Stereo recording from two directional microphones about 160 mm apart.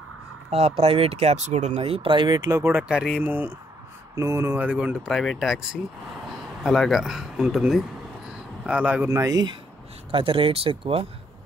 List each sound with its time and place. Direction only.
0.5 s speech: 40° right (ahead or behind)
2.6 s speech: 5° right (ahead or behind)
9.1 s speech: 20° right (ahead or behind)
10.1 s speech: 35° right (ahead or behind)